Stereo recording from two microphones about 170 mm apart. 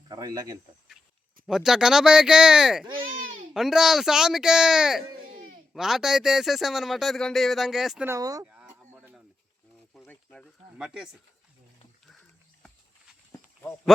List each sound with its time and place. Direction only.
0.1 s speech: 20° right (ahead or behind)
1.5 s a man's voice: 5° right (ahead or behind)
8.0 s speech: 20° right (ahead or behind)
8.4 s a sound: 10° right (ahead or behind)
9.9 s a sound: 5° left (ahead or behind)
10.8 s a man's voice: 5° right (ahead or behind)